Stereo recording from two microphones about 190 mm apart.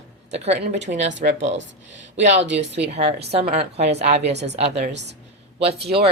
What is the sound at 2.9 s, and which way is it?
A woman's voice, 35° right (ahead or behind).